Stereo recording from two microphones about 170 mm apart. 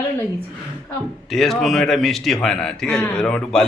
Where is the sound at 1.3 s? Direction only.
Centre (ahead or behind).